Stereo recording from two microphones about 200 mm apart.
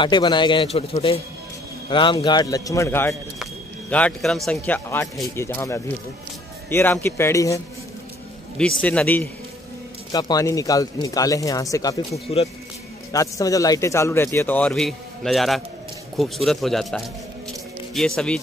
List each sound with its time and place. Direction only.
0.0 s a man's voice: 20° left (ahead or behind); by 5.3 s centre (ahead or behind)
5.3 s a man's voice: 15° left (ahead or behind)
8.5 s a man's voice: 5° left (ahead or behind)
12.3 s speech: 30° left (ahead or behind)
13.1 s a man's voice: 15° left (ahead or behind)